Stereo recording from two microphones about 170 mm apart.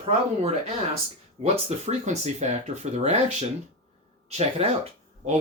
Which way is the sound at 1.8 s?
40° right (ahead or behind).